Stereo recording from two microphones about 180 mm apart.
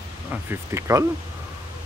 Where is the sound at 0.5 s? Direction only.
15° right (ahead or behind).